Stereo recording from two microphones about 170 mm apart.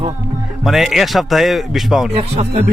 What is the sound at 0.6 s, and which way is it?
A man's voice, centre (ahead or behind).